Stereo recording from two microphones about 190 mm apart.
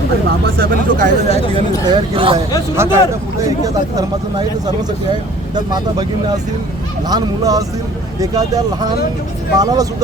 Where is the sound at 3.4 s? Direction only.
20° right (ahead or behind).